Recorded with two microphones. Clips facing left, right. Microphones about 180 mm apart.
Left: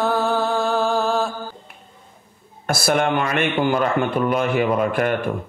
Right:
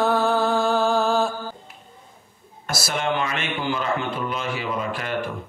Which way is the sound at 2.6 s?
55° left (ahead or behind).